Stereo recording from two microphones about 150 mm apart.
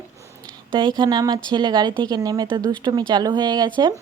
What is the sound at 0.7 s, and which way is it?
Speech, 30° right (ahead or behind).